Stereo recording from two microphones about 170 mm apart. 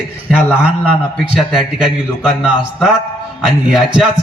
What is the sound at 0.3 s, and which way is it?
A man's voice, 5° right (ahead or behind).